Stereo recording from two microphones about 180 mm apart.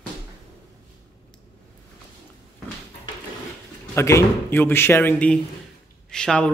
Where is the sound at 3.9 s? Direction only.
15° left (ahead or behind).